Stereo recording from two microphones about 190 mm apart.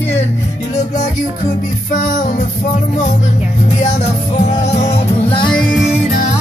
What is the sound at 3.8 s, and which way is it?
Music, 35° left (ahead or behind).